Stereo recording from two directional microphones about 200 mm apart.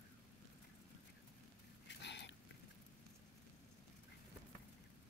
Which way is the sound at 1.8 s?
60° left (ahead or behind).